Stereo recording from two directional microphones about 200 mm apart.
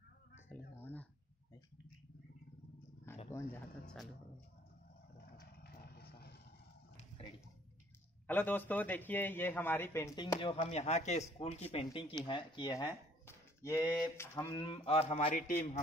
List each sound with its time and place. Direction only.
0.5 s a sound: 10° left (ahead or behind)
3.3 s speech: 10° left (ahead or behind)
5.1 s vehicle: 55° left (ahead or behind)
7.0 s a sound: 30° left (ahead or behind)
8.3 s a man's voice: 10° left (ahead or behind); by 15.3 s 30° left (ahead or behind)
15.3 s a man's voice: 40° left (ahead or behind)